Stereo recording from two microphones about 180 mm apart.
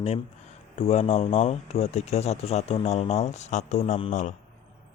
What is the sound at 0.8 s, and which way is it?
Speech, 35° left (ahead or behind).